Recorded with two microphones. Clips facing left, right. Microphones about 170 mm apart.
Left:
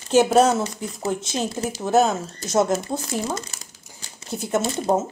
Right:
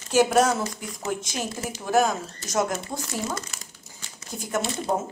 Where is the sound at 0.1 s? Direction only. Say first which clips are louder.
Left 4 dB; 25° left (ahead or behind).